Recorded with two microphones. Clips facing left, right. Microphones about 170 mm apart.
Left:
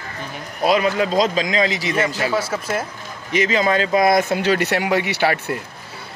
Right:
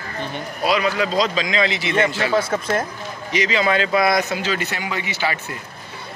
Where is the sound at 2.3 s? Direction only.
5° left (ahead or behind).